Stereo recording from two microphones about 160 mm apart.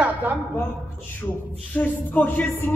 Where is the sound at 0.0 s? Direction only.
10° right (ahead or behind).